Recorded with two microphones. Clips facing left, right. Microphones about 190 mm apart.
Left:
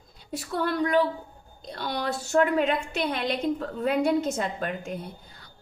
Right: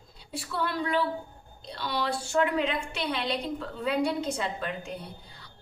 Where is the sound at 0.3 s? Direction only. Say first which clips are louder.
Left 4 dB; 45° left (ahead or behind).